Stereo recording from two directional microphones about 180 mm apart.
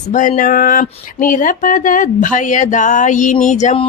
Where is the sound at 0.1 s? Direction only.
45° left (ahead or behind).